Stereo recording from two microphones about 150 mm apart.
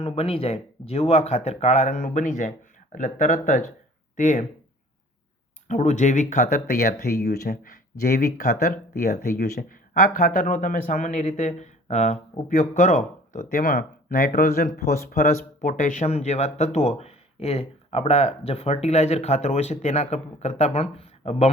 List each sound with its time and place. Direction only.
0.0 s speech: 40° left (ahead or behind); by 4.4 s 55° left (ahead or behind)
5.6 s speech: 50° left (ahead or behind)